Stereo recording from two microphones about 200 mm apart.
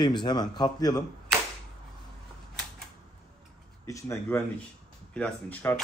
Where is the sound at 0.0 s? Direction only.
20° left (ahead or behind).